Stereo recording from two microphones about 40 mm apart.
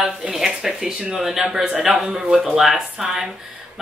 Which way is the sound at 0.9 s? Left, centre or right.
Centre.